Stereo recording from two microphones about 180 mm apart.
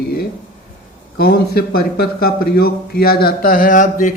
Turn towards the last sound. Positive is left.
turn(degrees=45)  # may be behind; listen again after turning